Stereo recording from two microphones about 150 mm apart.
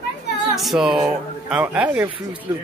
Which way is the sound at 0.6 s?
Centre (ahead or behind).